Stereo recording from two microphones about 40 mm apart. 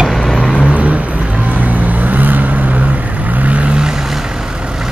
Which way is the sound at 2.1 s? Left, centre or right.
Right.